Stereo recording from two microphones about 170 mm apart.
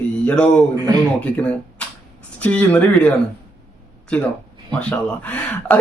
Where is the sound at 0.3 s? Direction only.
5° left (ahead or behind).